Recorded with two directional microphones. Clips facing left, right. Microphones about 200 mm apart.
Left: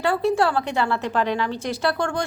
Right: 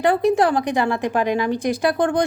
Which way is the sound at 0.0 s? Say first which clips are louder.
Right 4 dB; 15° right (ahead or behind).